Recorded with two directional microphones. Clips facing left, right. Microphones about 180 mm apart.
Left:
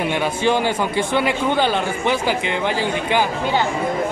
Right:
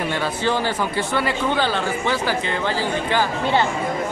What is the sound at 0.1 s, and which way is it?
A man's voice, 20° left (ahead or behind).